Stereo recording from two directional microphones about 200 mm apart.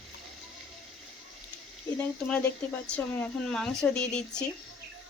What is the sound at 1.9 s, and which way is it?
Speech, 10° left (ahead or behind).